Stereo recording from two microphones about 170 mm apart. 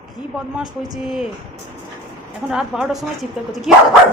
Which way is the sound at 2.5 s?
5° right (ahead or behind).